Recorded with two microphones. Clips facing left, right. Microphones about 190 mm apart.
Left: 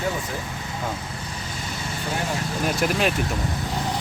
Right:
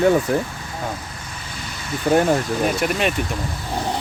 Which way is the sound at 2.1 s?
60° right (ahead or behind).